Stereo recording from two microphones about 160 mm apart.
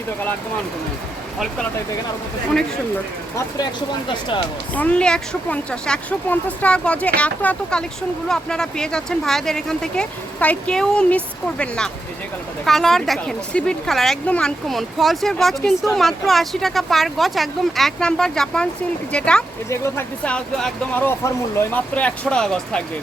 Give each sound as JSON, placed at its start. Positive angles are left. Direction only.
{"t": 4.7, "sound": "speech", "side_deg": 10}